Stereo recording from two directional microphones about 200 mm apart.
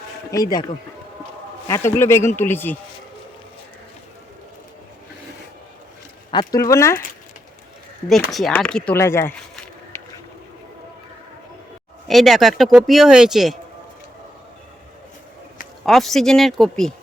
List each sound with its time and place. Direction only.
0.3 s speech: 15° left (ahead or behind)
1.6 s speech: 15° left (ahead or behind)
6.3 s speech: 15° left (ahead or behind)
8.3 s speech: centre (ahead or behind)
9.9 s boat: 10° left (ahead or behind)
12.0 s speech: centre (ahead or behind)
15.9 s speech: centre (ahead or behind)